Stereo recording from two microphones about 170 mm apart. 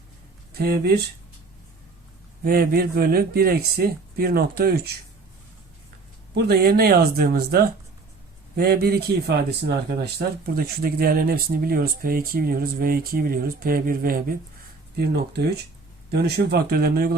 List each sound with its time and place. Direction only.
0.6 s speech: 65° right (ahead or behind)
2.4 s speech: 60° right (ahead or behind)
6.3 s speech: 65° right (ahead or behind)
14.9 s speech: 70° right (ahead or behind)